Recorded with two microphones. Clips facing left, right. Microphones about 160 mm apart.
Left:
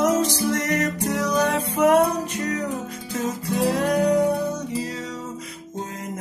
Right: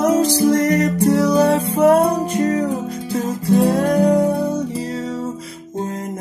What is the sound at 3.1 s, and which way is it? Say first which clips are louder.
Music: right 8 dB; 35° right (ahead or behind).